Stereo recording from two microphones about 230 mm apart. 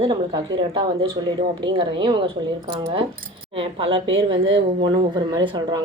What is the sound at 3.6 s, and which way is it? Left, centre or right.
Speech, right.